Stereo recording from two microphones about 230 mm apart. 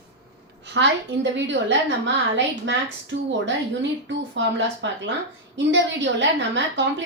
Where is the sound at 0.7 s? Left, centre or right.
Right.